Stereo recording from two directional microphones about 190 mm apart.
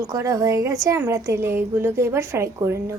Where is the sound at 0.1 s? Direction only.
15° right (ahead or behind).